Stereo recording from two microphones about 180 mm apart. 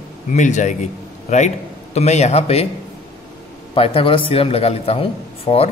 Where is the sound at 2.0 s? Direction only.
40° left (ahead or behind).